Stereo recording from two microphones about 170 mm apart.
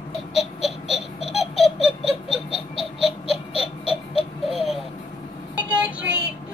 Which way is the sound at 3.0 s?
35° left (ahead or behind).